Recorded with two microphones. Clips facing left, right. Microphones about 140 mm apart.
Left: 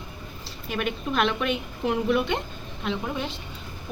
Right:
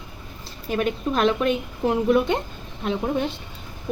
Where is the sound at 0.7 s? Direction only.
35° right (ahead or behind).